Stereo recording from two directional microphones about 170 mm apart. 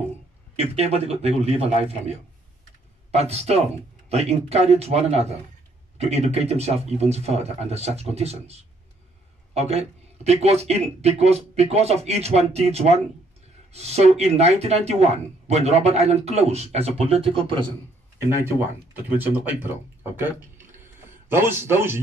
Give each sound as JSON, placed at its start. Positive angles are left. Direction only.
{"t": 0.6, "sound": "speech", "side_deg": -35}
{"t": 3.1, "sound": "speech", "side_deg": -40}
{"t": 19.1, "sound": "speech", "side_deg": -10}